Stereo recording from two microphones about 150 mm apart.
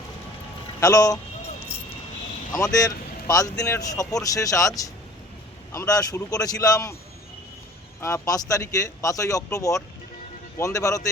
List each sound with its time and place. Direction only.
0.8 s a man's voice: 25° left (ahead or behind)
2.7 s a man's voice: 25° left (ahead or behind)
8.0 s a man's voice: 20° left (ahead or behind)